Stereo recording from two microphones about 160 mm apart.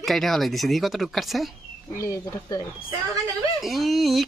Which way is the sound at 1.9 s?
15° left (ahead or behind).